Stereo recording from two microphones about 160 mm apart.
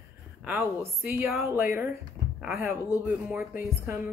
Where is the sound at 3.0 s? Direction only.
10° right (ahead or behind).